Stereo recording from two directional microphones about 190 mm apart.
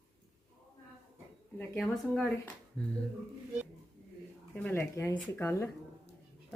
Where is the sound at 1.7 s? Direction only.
Centre (ahead or behind).